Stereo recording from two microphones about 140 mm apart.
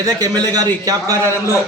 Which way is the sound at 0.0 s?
30° right (ahead or behind).